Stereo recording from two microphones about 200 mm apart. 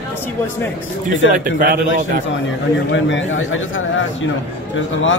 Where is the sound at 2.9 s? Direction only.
70° left (ahead or behind).